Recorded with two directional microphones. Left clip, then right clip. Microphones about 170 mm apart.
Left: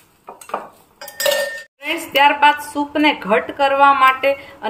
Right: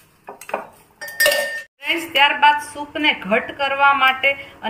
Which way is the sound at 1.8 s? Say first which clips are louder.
Left 2 dB; 55° left (ahead or behind).